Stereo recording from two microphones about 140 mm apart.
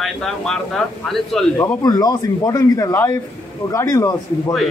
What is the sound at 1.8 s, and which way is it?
Speech, 30° left (ahead or behind).